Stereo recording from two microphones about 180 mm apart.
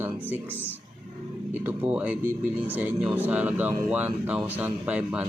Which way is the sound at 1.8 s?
10° right (ahead or behind).